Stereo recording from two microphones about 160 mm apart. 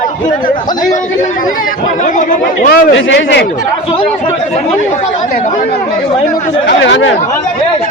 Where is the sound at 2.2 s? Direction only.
55° left (ahead or behind); by 3.4 s 90° left.